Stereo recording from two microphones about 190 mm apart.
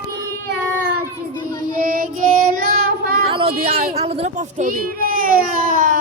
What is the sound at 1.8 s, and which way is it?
Female singing, 45° right (ahead or behind).